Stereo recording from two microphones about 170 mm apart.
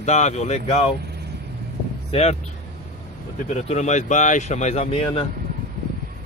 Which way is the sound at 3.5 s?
40° left (ahead or behind).